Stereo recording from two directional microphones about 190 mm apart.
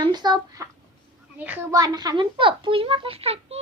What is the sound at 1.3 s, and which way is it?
A woman's voice, 10° right (ahead or behind).